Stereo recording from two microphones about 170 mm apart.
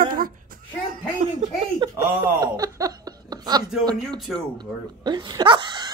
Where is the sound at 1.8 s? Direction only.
30° right (ahead or behind).